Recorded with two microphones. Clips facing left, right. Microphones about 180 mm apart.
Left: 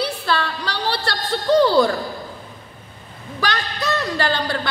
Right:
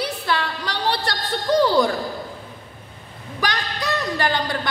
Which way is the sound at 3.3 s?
15° right (ahead or behind).